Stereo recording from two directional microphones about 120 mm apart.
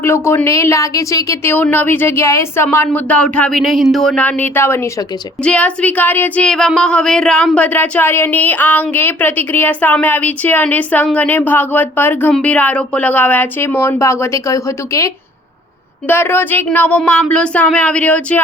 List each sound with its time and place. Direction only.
0.0 s a woman's voice: 20° left (ahead or behind); by 4.2 s centre (ahead or behind)
4.2 s speech: 15° left (ahead or behind)
5.4 s speech: 10° left (ahead or behind)